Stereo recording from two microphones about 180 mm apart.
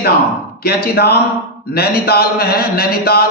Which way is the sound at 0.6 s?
60° left (ahead or behind).